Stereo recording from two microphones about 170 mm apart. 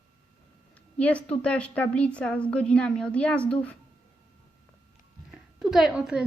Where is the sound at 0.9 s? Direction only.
5° left (ahead or behind).